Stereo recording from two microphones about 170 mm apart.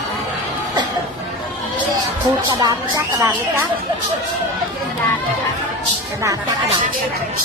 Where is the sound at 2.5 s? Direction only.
20° right (ahead or behind).